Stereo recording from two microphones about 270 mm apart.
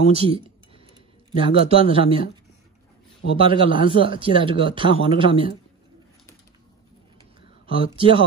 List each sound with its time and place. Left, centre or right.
0.1 s a sound: right
1.4 s speech: centre
3.3 s speech: centre
7.7 s speech: centre